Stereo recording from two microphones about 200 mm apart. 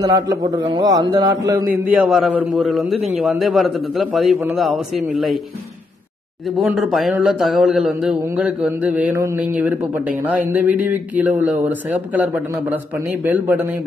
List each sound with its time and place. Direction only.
0.0 s a man's voice: 15° right (ahead or behind)
1.7 s a man's voice: 5° right (ahead or behind)
6.5 s a man's voice: 5° right (ahead or behind)